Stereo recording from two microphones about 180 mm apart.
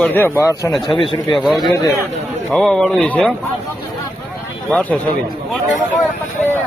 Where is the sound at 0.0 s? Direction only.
10° left (ahead or behind).